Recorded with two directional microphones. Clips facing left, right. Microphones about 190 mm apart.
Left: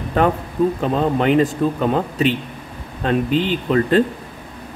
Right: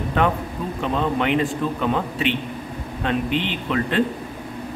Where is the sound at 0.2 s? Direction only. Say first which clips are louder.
Left 6 dB; 40° left (ahead or behind).